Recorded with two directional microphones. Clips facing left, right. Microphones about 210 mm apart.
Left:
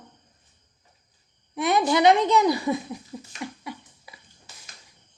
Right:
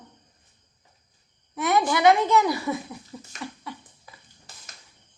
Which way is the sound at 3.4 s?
15° left (ahead or behind).